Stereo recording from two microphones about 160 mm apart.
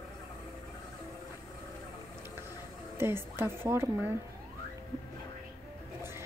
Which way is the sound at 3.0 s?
15° right (ahead or behind).